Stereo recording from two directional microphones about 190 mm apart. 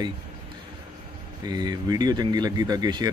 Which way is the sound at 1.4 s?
20° right (ahead or behind).